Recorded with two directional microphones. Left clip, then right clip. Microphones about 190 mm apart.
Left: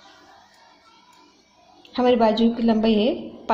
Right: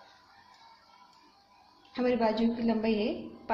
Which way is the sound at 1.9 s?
40° left (ahead or behind).